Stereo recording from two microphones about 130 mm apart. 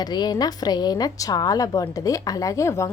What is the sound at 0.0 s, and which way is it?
Speech, 30° left (ahead or behind).